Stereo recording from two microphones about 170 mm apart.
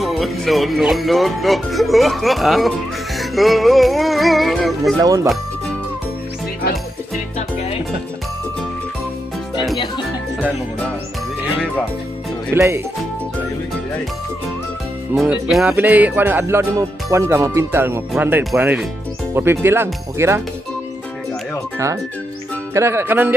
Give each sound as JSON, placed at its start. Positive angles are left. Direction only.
{"t": 0.0, "sound": "speech", "side_deg": 0}
{"t": 5.0, "sound": "speech", "side_deg": -20}
{"t": 12.5, "sound": "music", "side_deg": -15}
{"t": 15.1, "sound": "music", "side_deg": -5}
{"t": 18.1, "sound": "speech", "side_deg": -5}
{"t": 18.6, "sound": "music", "side_deg": -10}
{"t": 22.8, "sound": "music", "side_deg": -15}